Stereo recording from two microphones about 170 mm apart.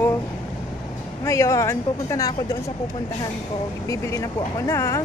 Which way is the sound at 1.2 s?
20° left (ahead or behind).